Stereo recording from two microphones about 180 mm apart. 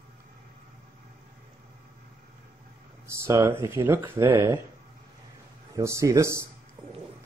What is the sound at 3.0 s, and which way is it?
Speech, 15° right (ahead or behind).